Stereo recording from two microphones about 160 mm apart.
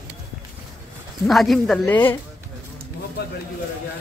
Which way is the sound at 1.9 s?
10° left (ahead or behind).